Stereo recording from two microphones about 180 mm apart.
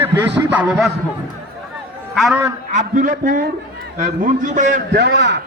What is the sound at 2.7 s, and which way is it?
A man's voice, 45° right (ahead or behind).